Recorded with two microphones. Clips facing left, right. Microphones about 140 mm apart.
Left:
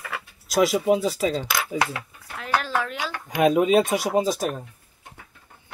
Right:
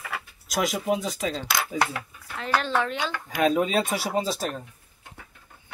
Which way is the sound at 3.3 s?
20° left (ahead or behind).